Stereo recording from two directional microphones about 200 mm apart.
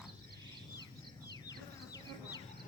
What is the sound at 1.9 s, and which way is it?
Bee, 20° left (ahead or behind).